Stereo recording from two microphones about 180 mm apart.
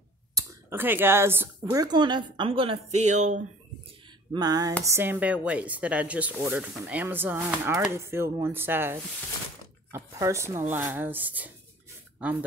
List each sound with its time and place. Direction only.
0.3 s speech: 15° right (ahead or behind); by 3.4 s 40° right (ahead or behind)
4.3 s a woman's voice: 20° right (ahead or behind)